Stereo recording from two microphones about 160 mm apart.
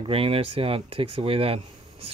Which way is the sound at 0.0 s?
35° right (ahead or behind).